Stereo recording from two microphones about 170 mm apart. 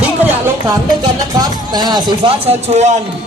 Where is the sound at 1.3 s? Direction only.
25° right (ahead or behind); by 2.9 s 40° right (ahead or behind).